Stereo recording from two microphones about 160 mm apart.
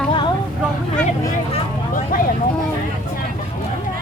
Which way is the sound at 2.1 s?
65° left (ahead or behind).